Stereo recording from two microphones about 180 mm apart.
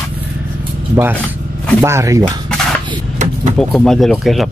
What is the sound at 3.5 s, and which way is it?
Speech, centre (ahead or behind).